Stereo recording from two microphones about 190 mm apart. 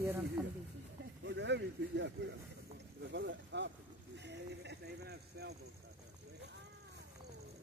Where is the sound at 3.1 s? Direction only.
70° right (ahead or behind).